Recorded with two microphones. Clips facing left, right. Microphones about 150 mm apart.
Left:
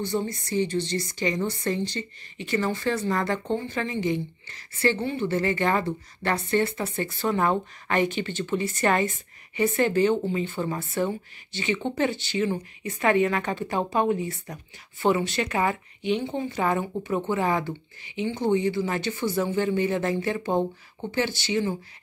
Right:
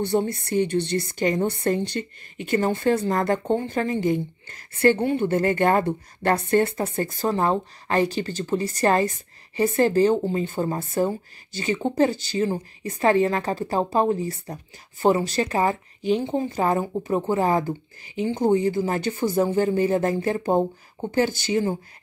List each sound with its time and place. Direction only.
0.0 s a woman's voice: 60° right (ahead or behind)